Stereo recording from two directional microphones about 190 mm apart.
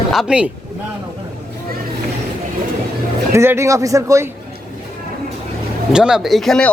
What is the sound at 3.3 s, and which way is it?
Speech, 15° right (ahead or behind).